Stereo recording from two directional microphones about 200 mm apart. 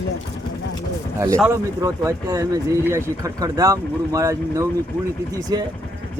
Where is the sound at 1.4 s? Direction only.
15° right (ahead or behind).